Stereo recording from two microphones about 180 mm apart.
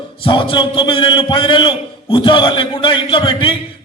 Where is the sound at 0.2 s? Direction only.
30° left (ahead or behind).